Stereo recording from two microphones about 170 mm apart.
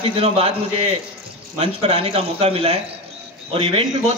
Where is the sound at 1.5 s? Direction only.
40° right (ahead or behind).